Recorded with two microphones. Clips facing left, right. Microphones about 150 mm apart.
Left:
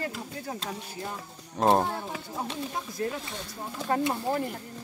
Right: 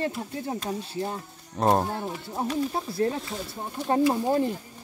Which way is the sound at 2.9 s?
30° right (ahead or behind).